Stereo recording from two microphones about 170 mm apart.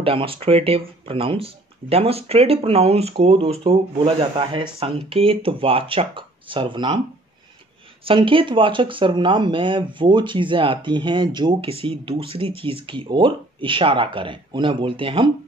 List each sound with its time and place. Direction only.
0.0 s speech: 35° right (ahead or behind)
8.0 s speech: 30° right (ahead or behind)